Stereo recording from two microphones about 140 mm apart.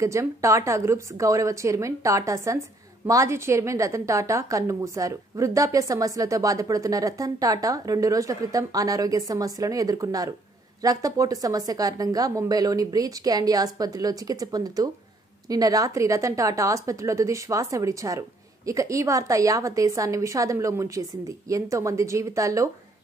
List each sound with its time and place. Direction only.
0.0 s a woman's voice: 20° right (ahead or behind)